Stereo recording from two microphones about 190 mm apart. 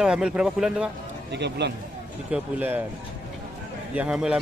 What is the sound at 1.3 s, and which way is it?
Speech, 65° right (ahead or behind).